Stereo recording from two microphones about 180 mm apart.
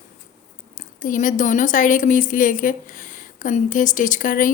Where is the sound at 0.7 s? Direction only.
50° left (ahead or behind).